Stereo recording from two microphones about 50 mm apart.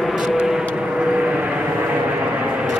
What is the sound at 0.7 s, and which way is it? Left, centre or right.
Vehicle, right.